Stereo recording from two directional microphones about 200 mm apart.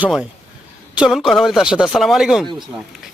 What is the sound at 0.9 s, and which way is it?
Speech, 5° right (ahead or behind).